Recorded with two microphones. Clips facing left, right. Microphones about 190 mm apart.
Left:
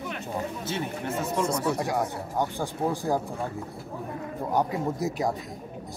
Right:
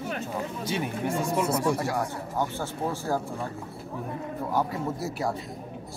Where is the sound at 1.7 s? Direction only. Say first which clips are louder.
Left 1 dB; 15° left (ahead or behind).